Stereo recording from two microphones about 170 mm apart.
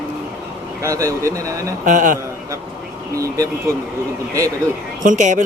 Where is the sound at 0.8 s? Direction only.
20° right (ahead or behind).